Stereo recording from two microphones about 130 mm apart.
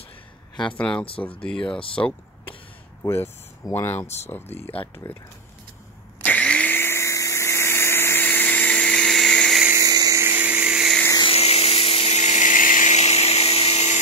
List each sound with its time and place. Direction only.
0.7 s speech: 5° left (ahead or behind)
1.8 s speech: 45° left (ahead or behind)
3.0 s speech: 20° left (ahead or behind)
4.7 s speech: 15° left (ahead or behind)
6.2 s vehicle: 10° left (ahead or behind)
9.7 s a sound: 25° right (ahead or behind); by 11.0 s 5° right (ahead or behind)
11.2 s a sound: 50° left (ahead or behind)